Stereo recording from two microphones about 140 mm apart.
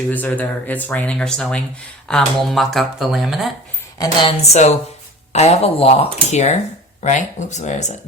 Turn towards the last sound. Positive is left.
turn(degrees=55)  # may be behind; listen again after turning